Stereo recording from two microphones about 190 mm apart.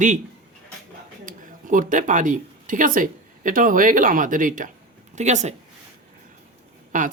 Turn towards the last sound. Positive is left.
turn(degrees=-45)  # may be behind; listen again after turning